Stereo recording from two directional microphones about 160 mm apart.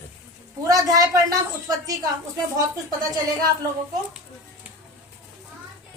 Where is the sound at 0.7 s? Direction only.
20° right (ahead or behind).